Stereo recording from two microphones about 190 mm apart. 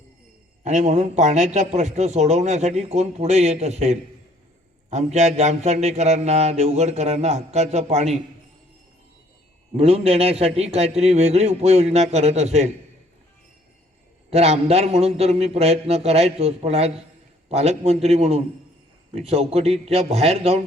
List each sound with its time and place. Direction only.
0.6 s a man's voice: 40° right (ahead or behind)
9.7 s a man's voice: 30° right (ahead or behind)
14.3 s a man's voice: 35° right (ahead or behind)